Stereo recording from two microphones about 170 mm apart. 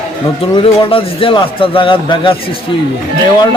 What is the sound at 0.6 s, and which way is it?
A man's voice, 30° left (ahead or behind).